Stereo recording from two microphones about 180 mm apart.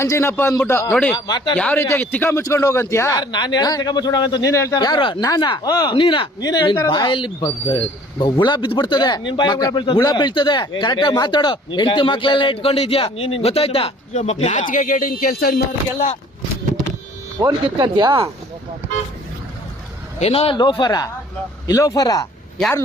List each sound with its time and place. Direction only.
0.0 s a man's voice: 15° left (ahead or behind)
1.1 s speech: 25° left (ahead or behind)
1.5 s a man's voice: 10° left (ahead or behind); by 15.6 s 60° left (ahead or behind)
17.4 s speech: 20° right (ahead or behind)
20.1 s speech: 35° left (ahead or behind)